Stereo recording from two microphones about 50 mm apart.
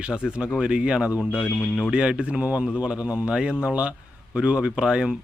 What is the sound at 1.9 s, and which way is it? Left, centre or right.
Speech, centre.